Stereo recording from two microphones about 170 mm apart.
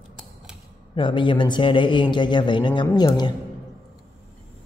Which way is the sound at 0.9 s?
30° left (ahead or behind).